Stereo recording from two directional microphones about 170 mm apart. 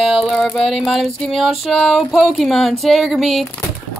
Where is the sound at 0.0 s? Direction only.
Centre (ahead or behind).